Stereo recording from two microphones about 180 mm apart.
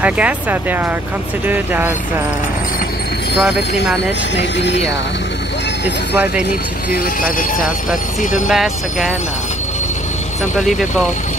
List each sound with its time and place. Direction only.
0.0 s speech: 10° right (ahead or behind)
4.4 s speech: 75° left (ahead or behind)
6.1 s speech: 5° right (ahead or behind)
6.9 s speech: 50° left (ahead or behind)
8.5 s speech: centre (ahead or behind)